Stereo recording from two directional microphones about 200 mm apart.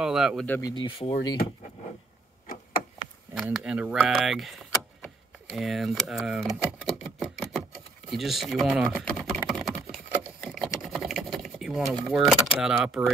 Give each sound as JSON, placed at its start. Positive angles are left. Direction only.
{"t": 0.0, "sound": "speech", "side_deg": -5}
{"t": 0.5, "sound": "speech", "side_deg": 20}
{"t": 3.3, "sound": "speech", "side_deg": -5}
{"t": 7.2, "sound": "a sound", "side_deg": 0}
{"t": 8.1, "sound": "typing", "side_deg": 0}